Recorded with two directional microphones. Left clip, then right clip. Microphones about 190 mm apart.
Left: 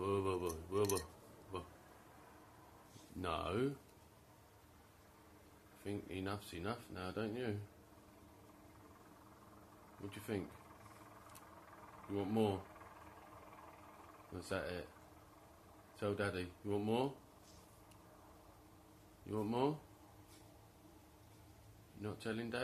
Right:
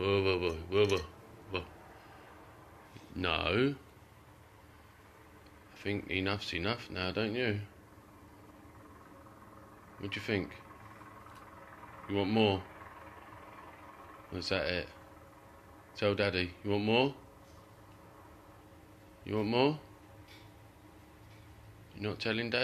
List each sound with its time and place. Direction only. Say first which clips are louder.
0.0 s a sound: right 8 dB; 10° left (ahead or behind)
3.2 s speech: right 9 dB; centre (ahead or behind)
5.9 s speech: right 10 dB; centre (ahead or behind)
10.0 s speech: right 10 dB; centre (ahead or behind)
12.1 s speech: right 8 dB; centre (ahead or behind)
14.3 s speech: right 10 dB; centre (ahead or behind)
16.0 s speech: right 10 dB; centre (ahead or behind)
19.2 s speech: right 9 dB; 5° left (ahead or behind)
22.0 s speech: right 10 dB; centre (ahead or behind)